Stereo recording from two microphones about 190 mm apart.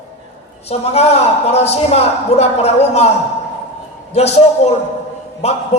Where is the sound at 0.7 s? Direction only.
35° left (ahead or behind).